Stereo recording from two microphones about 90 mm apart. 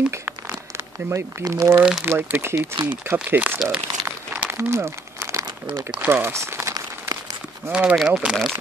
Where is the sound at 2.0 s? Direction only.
25° right (ahead or behind).